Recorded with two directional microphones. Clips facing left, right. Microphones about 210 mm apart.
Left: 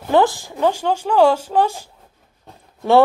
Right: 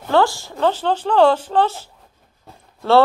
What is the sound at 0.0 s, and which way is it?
Speech, 15° left (ahead or behind).